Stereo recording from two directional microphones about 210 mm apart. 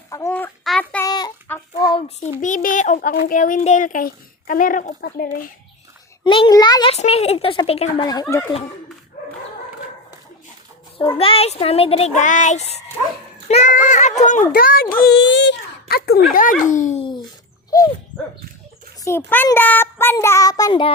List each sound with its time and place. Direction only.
0.1 s child singing: 10° left (ahead or behind)
1.0 s a sound: 20° left (ahead or behind)
2.4 s a child's voice: 40° left (ahead or behind)
6.2 s a child's voice: 25° left (ahead or behind)
11.2 s a child's voice: 25° left (ahead or behind)
19.0 s a child's voice: 10° left (ahead or behind)